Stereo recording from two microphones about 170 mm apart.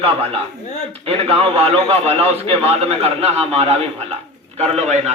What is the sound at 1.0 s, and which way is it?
A man's voice, 35° right (ahead or behind).